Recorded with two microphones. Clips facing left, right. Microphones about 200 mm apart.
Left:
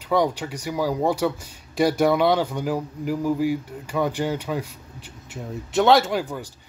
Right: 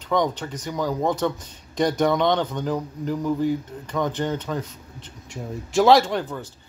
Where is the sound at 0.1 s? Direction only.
10° left (ahead or behind).